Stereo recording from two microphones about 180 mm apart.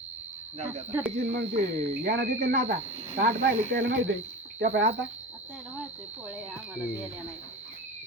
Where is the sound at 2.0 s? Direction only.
65° right (ahead or behind).